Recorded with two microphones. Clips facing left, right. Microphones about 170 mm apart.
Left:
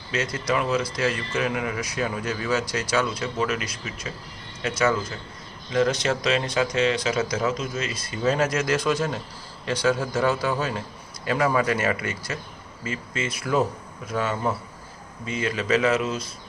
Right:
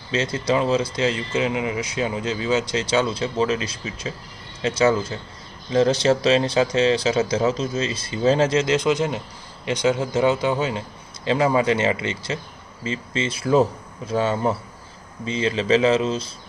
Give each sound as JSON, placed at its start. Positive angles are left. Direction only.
{"t": 0.1, "sound": "speech", "side_deg": -25}